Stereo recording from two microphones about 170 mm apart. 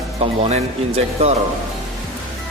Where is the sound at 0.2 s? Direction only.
35° right (ahead or behind).